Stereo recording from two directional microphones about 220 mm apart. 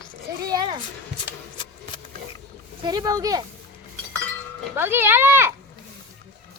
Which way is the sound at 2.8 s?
20° right (ahead or behind).